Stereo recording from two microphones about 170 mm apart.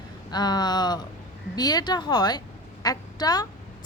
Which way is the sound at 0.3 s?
25° left (ahead or behind).